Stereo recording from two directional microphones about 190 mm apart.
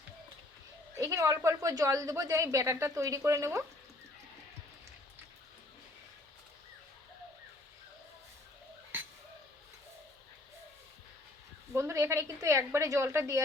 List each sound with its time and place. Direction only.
0.9 s speech: 15° right (ahead or behind)
11.7 s a woman's voice: 15° right (ahead or behind)